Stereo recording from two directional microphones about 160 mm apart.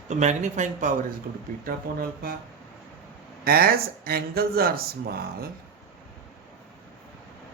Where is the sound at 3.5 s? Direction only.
70° right (ahead or behind).